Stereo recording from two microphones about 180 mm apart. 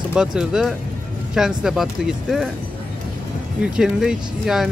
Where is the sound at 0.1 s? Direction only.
5° right (ahead or behind).